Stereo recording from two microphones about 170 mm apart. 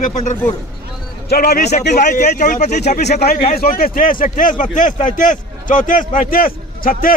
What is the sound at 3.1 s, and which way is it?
A man's voice, 70° left (ahead or behind).